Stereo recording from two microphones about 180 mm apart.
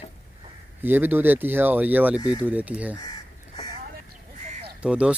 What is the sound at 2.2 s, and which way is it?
Speech, 25° left (ahead or behind).